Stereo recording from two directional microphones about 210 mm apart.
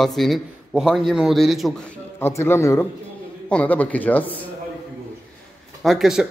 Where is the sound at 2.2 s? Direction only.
10° left (ahead or behind).